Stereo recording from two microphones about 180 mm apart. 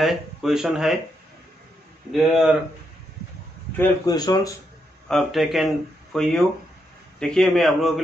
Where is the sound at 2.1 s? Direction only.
Centre (ahead or behind).